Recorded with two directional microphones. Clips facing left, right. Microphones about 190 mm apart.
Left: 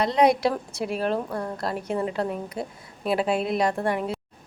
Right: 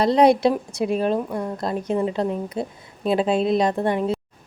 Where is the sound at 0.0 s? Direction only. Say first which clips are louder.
Right 4 dB; 35° right (ahead or behind).